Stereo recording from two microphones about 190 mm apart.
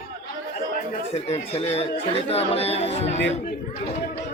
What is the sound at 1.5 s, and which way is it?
A man's voice, 30° left (ahead or behind).